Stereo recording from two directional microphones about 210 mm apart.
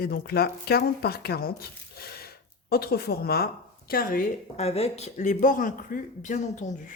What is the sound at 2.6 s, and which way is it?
A woman's voice, 50° left (ahead or behind).